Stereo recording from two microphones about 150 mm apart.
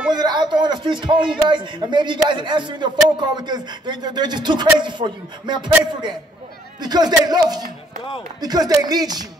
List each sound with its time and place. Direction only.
0.1 s a man's voice: 30° right (ahead or behind)
6.8 s speech: 30° right (ahead or behind)